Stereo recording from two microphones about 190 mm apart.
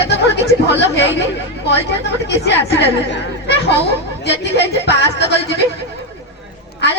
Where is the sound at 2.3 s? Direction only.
65° left (ahead or behind).